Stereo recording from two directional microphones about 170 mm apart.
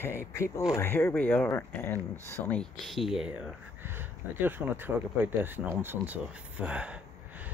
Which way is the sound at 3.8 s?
10° right (ahead or behind).